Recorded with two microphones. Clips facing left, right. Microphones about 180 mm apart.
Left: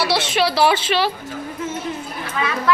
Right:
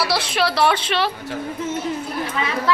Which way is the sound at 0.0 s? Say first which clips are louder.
Left 2 dB; centre (ahead or behind).